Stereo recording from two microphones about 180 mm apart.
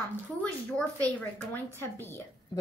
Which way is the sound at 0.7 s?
10° left (ahead or behind).